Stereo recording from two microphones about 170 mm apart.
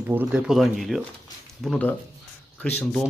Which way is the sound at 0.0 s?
10° right (ahead or behind).